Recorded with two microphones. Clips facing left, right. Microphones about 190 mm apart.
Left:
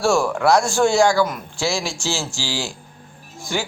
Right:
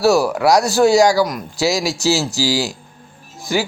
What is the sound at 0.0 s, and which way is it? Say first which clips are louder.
Speech: right 4 dB; 40° right (ahead or behind).